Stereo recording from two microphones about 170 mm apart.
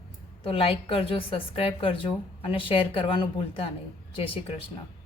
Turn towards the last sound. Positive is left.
turn(degrees=35)  # may be behind; listen again after turning